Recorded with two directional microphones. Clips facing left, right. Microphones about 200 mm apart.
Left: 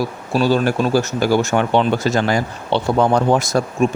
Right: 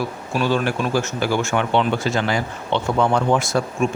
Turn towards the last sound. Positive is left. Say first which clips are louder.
# left 3 dB
turn(degrees=35)  # may be behind; listen again after turning